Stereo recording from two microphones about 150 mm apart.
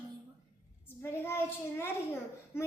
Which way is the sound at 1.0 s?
15° left (ahead or behind).